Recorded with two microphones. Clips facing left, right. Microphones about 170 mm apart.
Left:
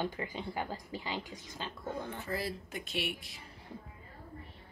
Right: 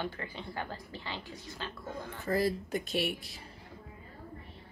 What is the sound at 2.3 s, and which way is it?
Speech, 40° right (ahead or behind).